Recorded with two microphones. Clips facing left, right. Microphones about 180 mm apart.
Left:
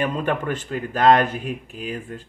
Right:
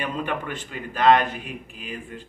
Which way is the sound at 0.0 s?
45° left (ahead or behind).